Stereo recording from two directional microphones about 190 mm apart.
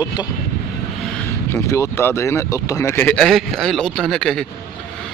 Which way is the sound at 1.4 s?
15° left (ahead or behind).